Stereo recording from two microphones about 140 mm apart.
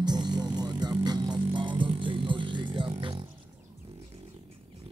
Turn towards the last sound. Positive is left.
turn(degrees=-35)  # may be behind; listen again after turning